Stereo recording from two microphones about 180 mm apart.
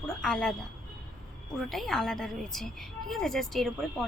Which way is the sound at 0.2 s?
5° left (ahead or behind).